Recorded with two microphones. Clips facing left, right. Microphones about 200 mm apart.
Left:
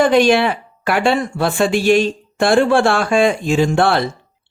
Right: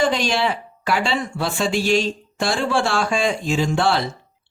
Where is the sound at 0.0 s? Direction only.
55° left (ahead or behind).